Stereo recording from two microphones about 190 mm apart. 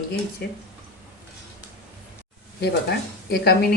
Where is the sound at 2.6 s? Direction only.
55° left (ahead or behind).